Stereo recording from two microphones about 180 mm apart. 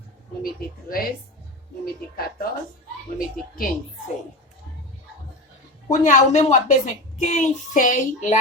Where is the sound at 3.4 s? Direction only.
50° left (ahead or behind).